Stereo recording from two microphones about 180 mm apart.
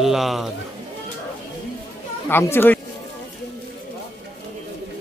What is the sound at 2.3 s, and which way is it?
Speech, 10° left (ahead or behind).